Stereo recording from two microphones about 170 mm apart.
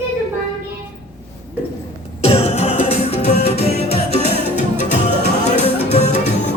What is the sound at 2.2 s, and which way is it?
Music, 35° left (ahead or behind).